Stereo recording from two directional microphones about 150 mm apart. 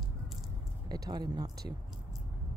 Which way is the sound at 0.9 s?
25° right (ahead or behind).